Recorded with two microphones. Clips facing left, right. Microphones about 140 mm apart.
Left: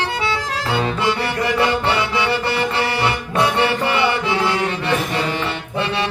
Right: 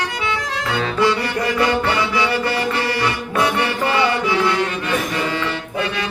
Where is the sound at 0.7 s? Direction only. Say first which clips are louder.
Right 2 dB; 20° left (ahead or behind).